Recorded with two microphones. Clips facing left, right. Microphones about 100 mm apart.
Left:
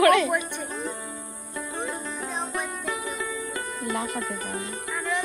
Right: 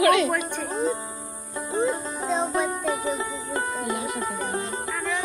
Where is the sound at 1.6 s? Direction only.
20° right (ahead or behind).